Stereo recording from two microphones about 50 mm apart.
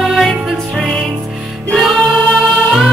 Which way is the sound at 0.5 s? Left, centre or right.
Centre.